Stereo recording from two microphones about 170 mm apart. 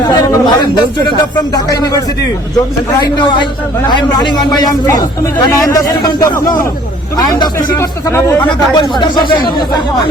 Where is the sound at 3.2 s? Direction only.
25° left (ahead or behind).